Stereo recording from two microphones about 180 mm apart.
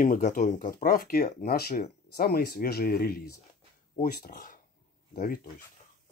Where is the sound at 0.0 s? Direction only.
50° left (ahead or behind).